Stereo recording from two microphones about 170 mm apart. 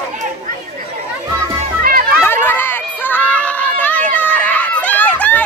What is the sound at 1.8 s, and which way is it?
Children playing, 60° right (ahead or behind).